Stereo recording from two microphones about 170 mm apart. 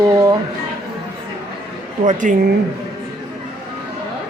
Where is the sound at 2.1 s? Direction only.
50° right (ahead or behind).